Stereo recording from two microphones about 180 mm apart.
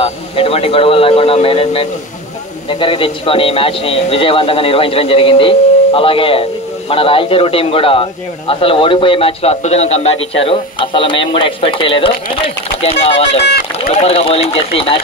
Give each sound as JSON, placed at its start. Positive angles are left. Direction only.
{"t": 0.0, "sound": "a man's voice", "side_deg": 30}